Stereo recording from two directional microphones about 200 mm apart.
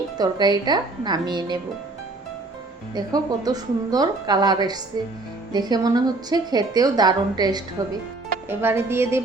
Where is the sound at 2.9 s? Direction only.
20° right (ahead or behind).